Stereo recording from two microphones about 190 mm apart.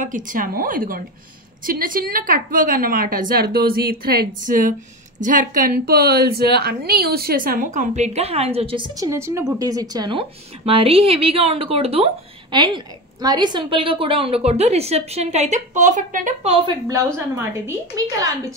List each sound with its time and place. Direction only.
0.0 s a woman's voice: 45° right (ahead or behind)
16.5 s a woman's voice: 20° right (ahead or behind)